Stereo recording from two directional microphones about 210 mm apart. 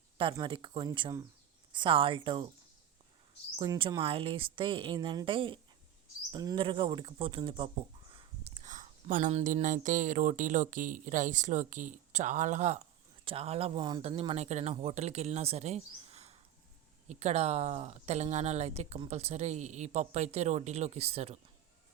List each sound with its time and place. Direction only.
0.2 s speech: 25° right (ahead or behind)
3.6 s speech: 20° right (ahead or behind)